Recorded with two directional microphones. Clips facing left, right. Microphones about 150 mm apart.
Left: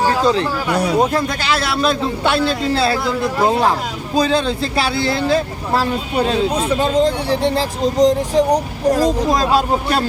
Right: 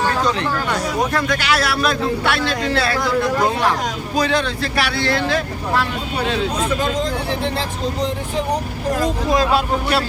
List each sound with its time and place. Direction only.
1.1 s a man's voice: 30° left (ahead or behind)